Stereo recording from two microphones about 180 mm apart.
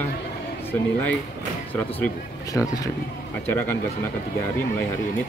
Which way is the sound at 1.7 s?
10° left (ahead or behind).